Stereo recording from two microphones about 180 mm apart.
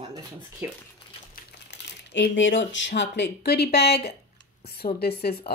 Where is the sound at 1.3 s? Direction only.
75° left (ahead or behind).